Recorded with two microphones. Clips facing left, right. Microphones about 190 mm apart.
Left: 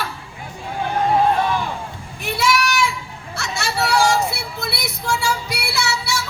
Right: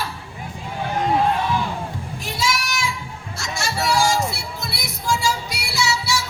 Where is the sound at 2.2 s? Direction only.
60° left (ahead or behind).